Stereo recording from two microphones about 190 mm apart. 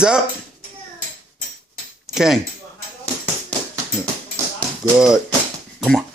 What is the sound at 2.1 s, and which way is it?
Speech, centre (ahead or behind).